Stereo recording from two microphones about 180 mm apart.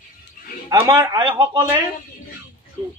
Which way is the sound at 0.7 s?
20° right (ahead or behind).